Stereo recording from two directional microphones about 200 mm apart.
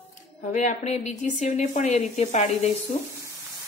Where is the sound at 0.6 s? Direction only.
35° left (ahead or behind).